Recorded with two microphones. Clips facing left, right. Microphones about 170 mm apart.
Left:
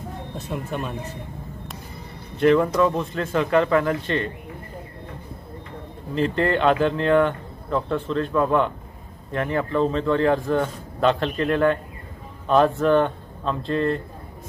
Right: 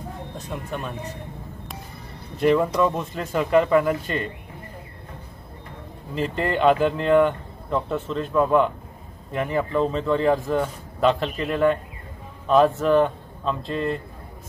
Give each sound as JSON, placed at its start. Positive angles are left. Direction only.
{"t": 0.5, "sound": "speech", "side_deg": 0}
{"t": 2.3, "sound": "speech", "side_deg": -5}
{"t": 6.1, "sound": "speech", "side_deg": -5}